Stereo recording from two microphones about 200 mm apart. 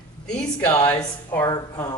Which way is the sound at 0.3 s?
5° left (ahead or behind).